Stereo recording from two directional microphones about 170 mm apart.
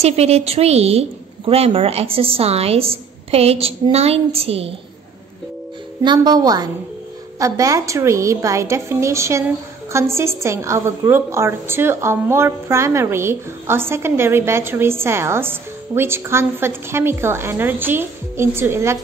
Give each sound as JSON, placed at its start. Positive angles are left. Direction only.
{"t": 0.0, "sound": "a woman's voice", "side_deg": -40}
{"t": 6.0, "sound": "a woman's voice", "side_deg": -25}